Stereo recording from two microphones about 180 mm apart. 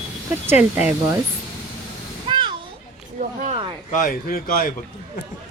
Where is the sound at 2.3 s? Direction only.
25° right (ahead or behind).